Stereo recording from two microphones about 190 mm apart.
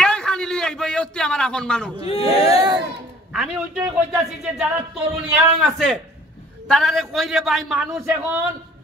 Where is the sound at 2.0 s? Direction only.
30° left (ahead or behind).